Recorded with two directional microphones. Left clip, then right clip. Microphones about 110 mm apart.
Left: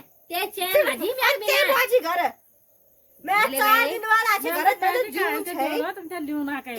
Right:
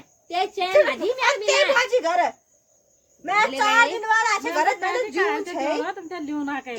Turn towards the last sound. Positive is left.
turn(degrees=15)  # may be behind; listen again after turning